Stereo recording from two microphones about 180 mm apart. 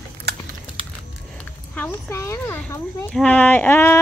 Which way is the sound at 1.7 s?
15° left (ahead or behind).